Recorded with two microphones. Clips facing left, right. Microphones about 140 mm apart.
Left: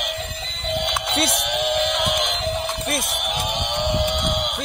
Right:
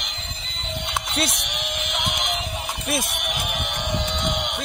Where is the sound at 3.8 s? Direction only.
20° left (ahead or behind).